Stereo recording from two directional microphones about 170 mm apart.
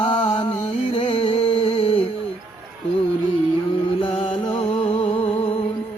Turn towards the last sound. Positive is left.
turn(degrees=35)  # may be behind; listen again after turning